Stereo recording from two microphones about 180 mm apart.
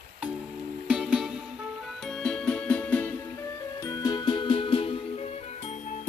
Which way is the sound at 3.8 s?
20° left (ahead or behind).